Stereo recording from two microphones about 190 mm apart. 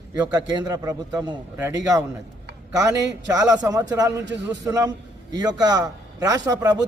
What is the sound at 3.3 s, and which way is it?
Speech, 20° right (ahead or behind).